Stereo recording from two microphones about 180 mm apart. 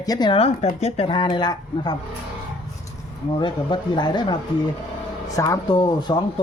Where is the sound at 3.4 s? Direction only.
25° left (ahead or behind).